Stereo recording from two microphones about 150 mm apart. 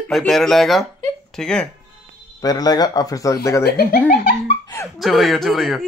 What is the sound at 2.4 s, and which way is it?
Speech, 25° left (ahead or behind).